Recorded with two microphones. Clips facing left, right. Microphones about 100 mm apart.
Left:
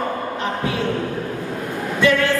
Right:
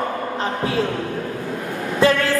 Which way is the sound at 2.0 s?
35° right (ahead or behind).